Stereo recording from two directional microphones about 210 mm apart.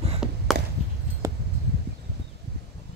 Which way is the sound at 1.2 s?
15° right (ahead or behind).